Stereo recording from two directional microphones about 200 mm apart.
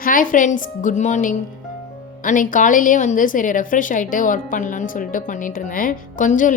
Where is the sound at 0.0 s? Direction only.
45° left (ahead or behind).